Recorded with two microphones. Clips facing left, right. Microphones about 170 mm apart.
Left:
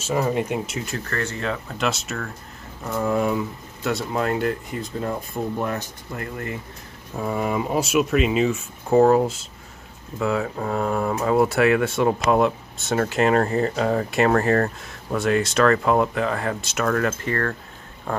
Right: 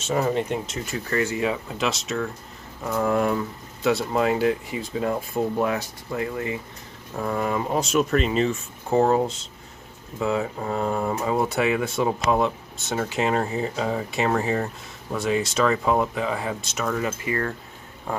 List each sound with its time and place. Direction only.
0.0 s speech: 5° left (ahead or behind)
1.1 s speech: 10° right (ahead or behind)
1.9 s speech: centre (ahead or behind)
7.2 s speech: 5° left (ahead or behind)